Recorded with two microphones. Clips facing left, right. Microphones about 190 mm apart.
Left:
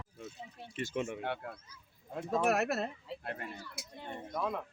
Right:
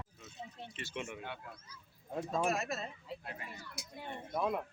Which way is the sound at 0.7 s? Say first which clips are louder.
Left 8 dB; 45° left (ahead or behind).